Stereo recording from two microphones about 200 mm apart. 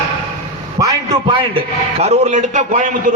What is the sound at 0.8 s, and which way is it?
A man's voice, 25° right (ahead or behind).